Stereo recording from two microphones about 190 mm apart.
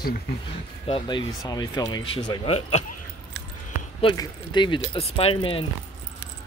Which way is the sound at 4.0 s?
25° left (ahead or behind).